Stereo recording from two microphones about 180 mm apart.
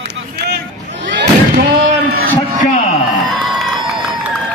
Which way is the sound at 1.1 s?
75° right (ahead or behind).